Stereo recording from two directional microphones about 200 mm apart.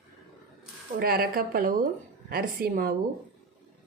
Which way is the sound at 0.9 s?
50° right (ahead or behind).